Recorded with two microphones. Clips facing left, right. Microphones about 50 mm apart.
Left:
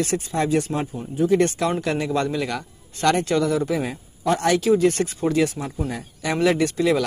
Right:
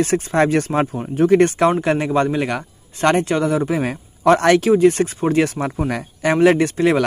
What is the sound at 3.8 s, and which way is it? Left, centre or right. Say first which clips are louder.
Speech: right 8 dB; right.